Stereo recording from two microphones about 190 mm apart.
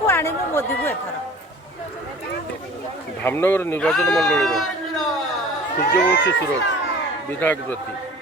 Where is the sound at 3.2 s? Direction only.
10° left (ahead or behind).